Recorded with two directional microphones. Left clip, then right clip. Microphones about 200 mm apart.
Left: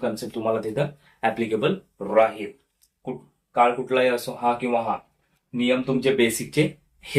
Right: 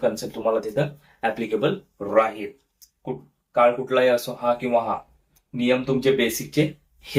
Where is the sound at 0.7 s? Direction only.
15° left (ahead or behind).